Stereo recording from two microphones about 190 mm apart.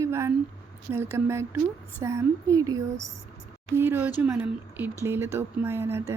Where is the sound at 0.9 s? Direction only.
15° right (ahead or behind).